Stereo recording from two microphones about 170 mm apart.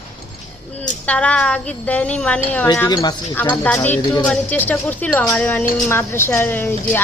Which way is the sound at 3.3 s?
10° left (ahead or behind).